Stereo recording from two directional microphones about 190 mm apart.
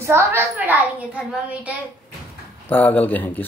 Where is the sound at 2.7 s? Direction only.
10° left (ahead or behind).